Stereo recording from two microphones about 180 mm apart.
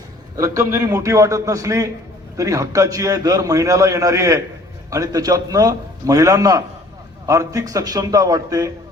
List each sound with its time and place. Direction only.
0.3 s a man's voice: 15° right (ahead or behind)